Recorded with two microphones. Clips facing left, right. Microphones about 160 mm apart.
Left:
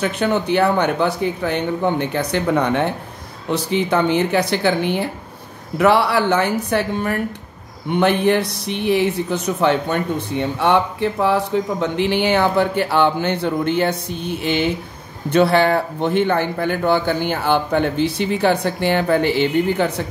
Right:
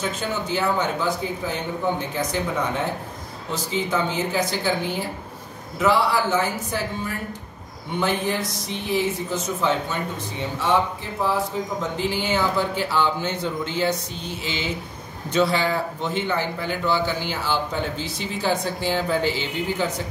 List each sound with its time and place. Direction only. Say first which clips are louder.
0.0 s speech: left 8 dB; 65° left (ahead or behind)